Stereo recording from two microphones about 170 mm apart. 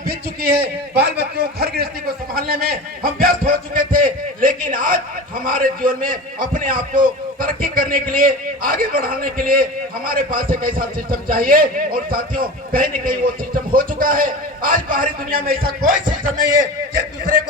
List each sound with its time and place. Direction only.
0.1 s a man's voice: 70° right (ahead or behind)